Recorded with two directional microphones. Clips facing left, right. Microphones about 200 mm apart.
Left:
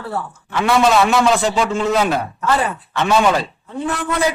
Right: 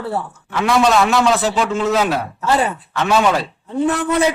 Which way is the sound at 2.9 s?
Centre (ahead or behind).